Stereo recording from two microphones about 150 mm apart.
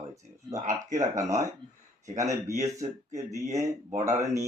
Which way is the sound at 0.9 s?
20° right (ahead or behind).